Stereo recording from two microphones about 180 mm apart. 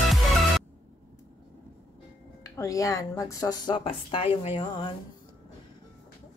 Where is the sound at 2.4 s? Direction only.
15° left (ahead or behind).